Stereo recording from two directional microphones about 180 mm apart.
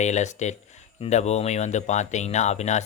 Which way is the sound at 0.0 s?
40° left (ahead or behind).